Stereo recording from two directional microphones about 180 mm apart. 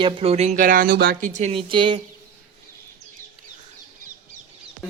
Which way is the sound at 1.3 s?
40° right (ahead or behind).